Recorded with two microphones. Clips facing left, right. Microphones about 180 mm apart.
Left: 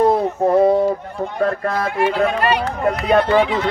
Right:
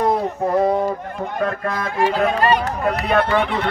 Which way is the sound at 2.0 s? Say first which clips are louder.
Right 1 dB; 40° right (ahead or behind).